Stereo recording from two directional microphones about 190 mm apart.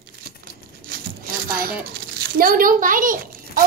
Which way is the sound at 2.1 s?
50° right (ahead or behind).